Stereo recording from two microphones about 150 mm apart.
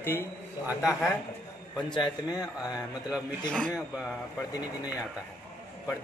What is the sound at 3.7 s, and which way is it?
Speech, 5° right (ahead or behind).